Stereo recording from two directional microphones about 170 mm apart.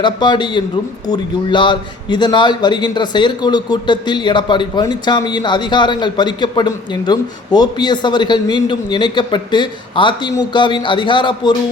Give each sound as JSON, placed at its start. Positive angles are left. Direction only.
{"t": 0.0, "sound": "a man's voice", "side_deg": 25}